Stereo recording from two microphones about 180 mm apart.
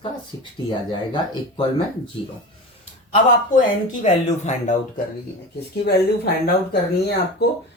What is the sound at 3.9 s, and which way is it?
Speech, 40° left (ahead or behind).